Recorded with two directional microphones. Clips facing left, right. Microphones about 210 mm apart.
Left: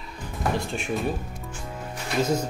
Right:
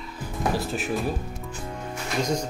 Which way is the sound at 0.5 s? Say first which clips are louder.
Right 1 dB; 5° right (ahead or behind).